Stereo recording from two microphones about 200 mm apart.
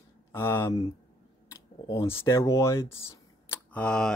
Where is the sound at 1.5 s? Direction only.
15° left (ahead or behind).